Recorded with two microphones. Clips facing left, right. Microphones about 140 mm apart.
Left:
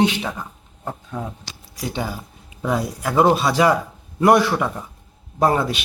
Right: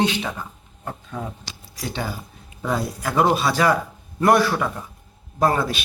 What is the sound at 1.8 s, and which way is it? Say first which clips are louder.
Speech: left 2 dB; 10° left (ahead or behind).